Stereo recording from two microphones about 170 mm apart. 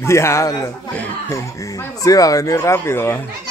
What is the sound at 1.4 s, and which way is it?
Speech, 20° left (ahead or behind).